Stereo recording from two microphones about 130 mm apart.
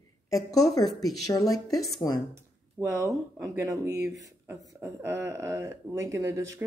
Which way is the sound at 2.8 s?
25° right (ahead or behind).